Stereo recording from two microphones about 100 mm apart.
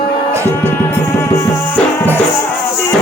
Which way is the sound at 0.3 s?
30° right (ahead or behind).